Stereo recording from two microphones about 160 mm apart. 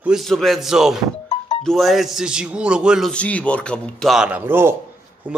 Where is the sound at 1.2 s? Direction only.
35° left (ahead or behind).